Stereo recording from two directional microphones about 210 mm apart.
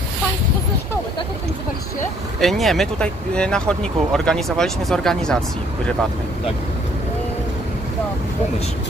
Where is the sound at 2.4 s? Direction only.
Centre (ahead or behind).